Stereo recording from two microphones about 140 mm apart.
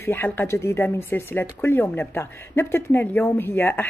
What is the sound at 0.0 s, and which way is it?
Speech, 15° left (ahead or behind).